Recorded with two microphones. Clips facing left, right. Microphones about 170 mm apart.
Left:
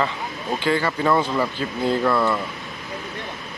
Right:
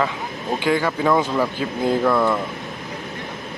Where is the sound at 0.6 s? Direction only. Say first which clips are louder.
Right 2 dB; 10° right (ahead or behind).